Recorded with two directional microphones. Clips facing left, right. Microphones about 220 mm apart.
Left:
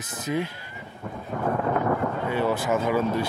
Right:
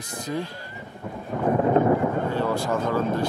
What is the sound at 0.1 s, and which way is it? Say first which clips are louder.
Speech: left 2 dB; 20° left (ahead or behind).